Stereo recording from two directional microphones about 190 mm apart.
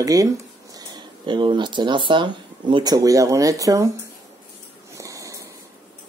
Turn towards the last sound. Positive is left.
turn(degrees=-15)  # may be behind; listen again after turning